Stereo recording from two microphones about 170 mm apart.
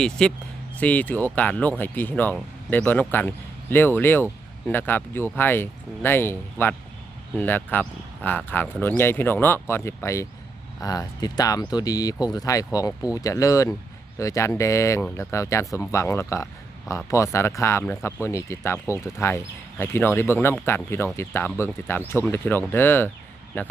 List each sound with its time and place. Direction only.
0.0 s speech: 5° left (ahead or behind)